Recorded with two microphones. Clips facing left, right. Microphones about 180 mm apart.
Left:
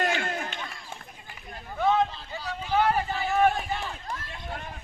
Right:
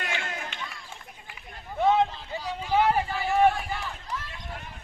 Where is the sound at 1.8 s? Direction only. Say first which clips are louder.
Right 2 dB; 25° right (ahead or behind).